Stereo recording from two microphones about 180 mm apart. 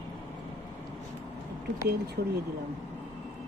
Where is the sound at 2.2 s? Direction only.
65° right (ahead or behind).